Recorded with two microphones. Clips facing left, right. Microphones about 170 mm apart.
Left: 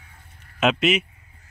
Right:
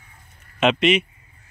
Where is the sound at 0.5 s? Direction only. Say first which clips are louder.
Right 2 dB; 5° left (ahead or behind).